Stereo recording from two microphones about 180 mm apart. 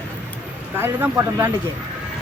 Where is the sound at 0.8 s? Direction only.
15° right (ahead or behind).